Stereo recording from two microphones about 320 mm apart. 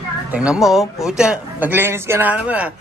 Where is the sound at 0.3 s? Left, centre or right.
Centre.